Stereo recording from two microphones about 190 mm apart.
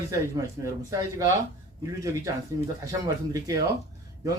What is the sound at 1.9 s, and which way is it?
Speech, 15° right (ahead or behind).